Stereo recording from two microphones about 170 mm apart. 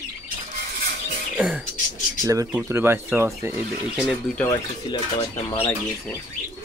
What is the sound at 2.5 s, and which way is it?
Speech, 15° right (ahead or behind).